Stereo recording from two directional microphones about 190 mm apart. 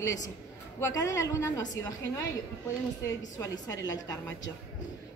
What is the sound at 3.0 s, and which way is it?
A woman's voice, 20° left (ahead or behind).